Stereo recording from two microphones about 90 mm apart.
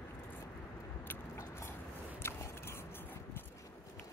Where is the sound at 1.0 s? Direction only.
25° left (ahead or behind).